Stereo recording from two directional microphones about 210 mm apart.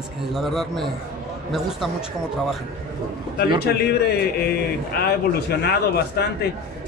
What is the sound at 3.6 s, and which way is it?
Speech, 50° left (ahead or behind).